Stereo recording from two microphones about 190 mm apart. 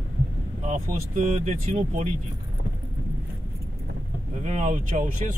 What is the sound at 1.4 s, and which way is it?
Speech, 35° right (ahead or behind).